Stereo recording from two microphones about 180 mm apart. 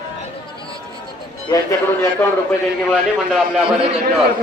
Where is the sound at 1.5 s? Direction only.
15° left (ahead or behind).